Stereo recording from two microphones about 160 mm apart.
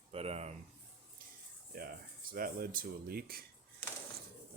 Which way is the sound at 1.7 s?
65° right (ahead or behind).